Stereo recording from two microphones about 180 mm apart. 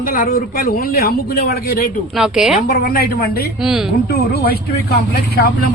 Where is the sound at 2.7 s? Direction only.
55° left (ahead or behind).